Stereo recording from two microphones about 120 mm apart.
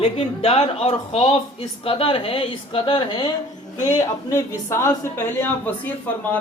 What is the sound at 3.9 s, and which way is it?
A man's voice, 25° left (ahead or behind).